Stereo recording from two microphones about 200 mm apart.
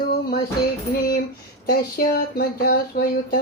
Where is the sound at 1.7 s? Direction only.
50° left (ahead or behind).